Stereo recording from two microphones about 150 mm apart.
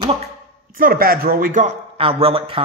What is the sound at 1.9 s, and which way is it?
Speech, 40° right (ahead or behind).